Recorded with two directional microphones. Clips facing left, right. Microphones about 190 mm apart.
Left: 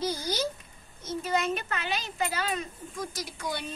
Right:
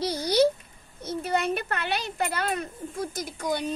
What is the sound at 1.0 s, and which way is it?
A woman's voice, 60° right (ahead or behind).